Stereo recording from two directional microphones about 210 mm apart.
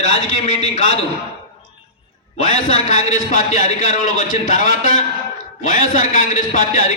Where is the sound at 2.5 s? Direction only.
35° left (ahead or behind).